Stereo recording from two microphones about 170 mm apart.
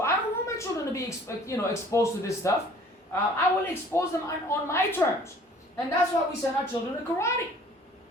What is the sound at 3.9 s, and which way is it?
A woman's voice, 15° left (ahead or behind).